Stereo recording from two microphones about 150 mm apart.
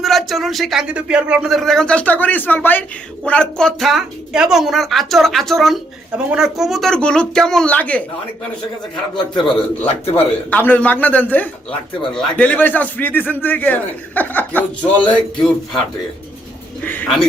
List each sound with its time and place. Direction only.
0.0 s speech: centre (ahead or behind)
9.5 s a man's voice: 35° left (ahead or behind)
10.5 s a man's voice: 10° left (ahead or behind)
16.8 s a man's voice: 10° left (ahead or behind)